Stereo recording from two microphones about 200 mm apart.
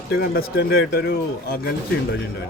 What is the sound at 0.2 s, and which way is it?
Speech, 50° left (ahead or behind).